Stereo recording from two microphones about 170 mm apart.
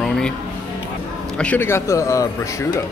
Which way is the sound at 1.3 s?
10° left (ahead or behind).